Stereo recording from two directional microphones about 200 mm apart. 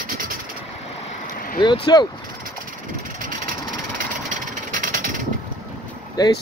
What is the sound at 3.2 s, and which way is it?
Vehicle, 40° right (ahead or behind).